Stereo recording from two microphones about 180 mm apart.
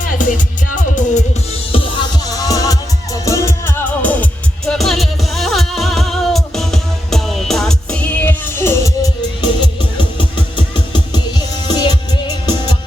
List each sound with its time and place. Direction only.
0.0 s music: 50° left (ahead or behind)
1.7 s music: 30° left (ahead or behind)